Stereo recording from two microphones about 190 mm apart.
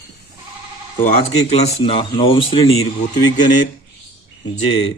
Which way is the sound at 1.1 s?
30° left (ahead or behind).